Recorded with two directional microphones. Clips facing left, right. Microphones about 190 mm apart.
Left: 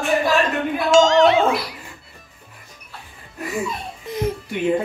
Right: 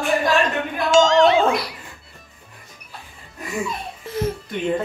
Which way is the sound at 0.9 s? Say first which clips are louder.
Left 1 dB; centre (ahead or behind).